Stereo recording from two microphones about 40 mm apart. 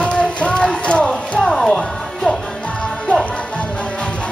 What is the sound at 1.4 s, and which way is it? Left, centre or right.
Music, centre.